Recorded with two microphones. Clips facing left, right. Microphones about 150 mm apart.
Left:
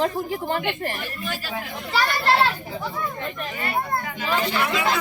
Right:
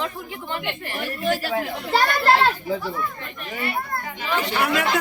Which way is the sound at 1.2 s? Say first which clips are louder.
Right 10 dB; 60° right (ahead or behind).